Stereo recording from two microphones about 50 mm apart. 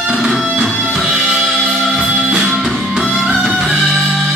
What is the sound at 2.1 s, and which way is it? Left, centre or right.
Music, centre.